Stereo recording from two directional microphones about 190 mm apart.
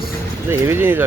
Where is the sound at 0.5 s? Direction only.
10° right (ahead or behind).